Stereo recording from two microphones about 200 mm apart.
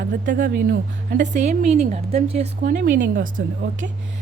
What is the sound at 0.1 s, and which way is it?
A woman's voice, 40° right (ahead or behind).